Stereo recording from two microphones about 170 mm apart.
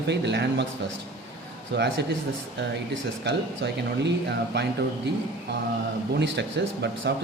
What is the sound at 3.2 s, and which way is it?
Speech, 90° right.